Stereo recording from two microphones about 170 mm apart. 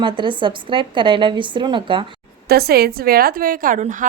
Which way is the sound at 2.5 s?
65° right (ahead or behind).